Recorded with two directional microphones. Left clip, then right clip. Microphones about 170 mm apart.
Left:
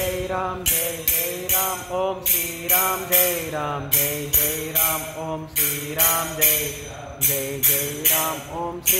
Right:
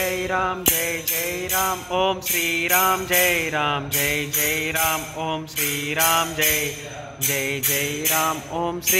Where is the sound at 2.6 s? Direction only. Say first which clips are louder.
Right 1 dB; 25° right (ahead or behind).